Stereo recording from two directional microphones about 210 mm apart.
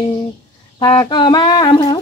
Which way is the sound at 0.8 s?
20° left (ahead or behind).